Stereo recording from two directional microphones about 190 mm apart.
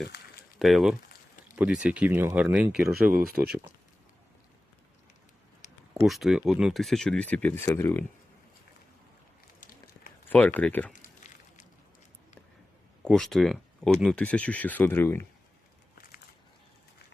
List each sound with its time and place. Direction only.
0.6 s speech: centre (ahead or behind)
3.2 s speech: 55° right (ahead or behind)
5.9 s speech: centre (ahead or behind)
10.2 s speech: 10° left (ahead or behind)
13.1 s speech: centre (ahead or behind)